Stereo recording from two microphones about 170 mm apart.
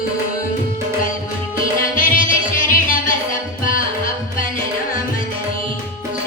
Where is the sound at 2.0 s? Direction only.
55° left (ahead or behind).